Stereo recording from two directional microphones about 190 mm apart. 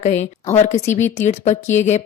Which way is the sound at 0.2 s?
35° left (ahead or behind).